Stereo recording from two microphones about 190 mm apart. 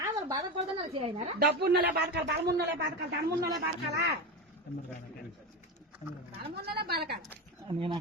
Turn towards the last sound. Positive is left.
turn(degrees=-25)  # may be behind; listen again after turning